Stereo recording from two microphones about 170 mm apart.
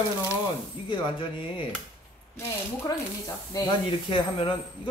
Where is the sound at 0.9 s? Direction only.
30° left (ahead or behind).